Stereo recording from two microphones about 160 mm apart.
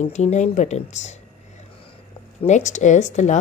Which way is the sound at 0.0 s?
45° left (ahead or behind).